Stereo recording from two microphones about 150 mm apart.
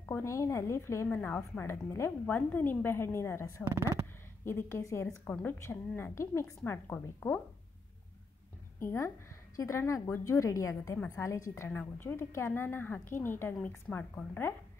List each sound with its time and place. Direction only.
0.1 s a woman's voice: 20° left (ahead or behind)
8.7 s a woman's voice: 15° left (ahead or behind)